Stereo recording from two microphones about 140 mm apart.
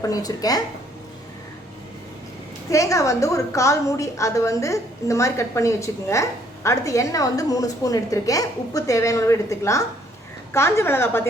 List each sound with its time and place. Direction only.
0.0 s a woman's voice: 25° left (ahead or behind)
2.6 s a woman's voice: 20° left (ahead or behind)